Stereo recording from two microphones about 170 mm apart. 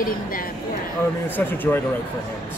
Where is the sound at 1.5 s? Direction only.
10° left (ahead or behind).